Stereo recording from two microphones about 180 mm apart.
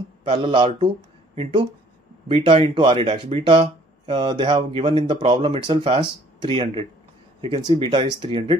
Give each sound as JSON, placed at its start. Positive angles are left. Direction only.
{"t": 0.2, "sound": "speech", "side_deg": -30}